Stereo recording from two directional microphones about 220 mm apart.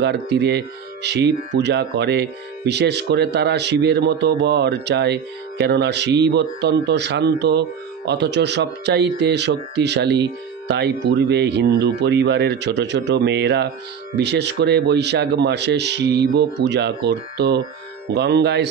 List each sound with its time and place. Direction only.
0.0 s speech: 50° right (ahead or behind)